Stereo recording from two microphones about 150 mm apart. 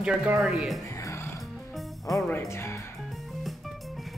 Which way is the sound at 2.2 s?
15° left (ahead or behind).